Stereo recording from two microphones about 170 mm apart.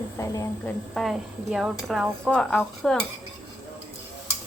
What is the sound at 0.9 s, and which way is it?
Speech, centre (ahead or behind).